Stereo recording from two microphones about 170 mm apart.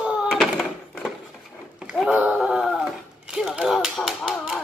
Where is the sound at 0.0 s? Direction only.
5° right (ahead or behind).